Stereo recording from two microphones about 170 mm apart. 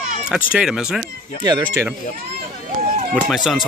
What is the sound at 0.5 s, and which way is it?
Speech, 5° right (ahead or behind).